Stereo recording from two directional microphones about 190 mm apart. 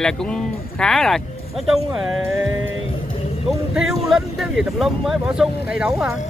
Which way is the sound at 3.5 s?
Centre (ahead or behind).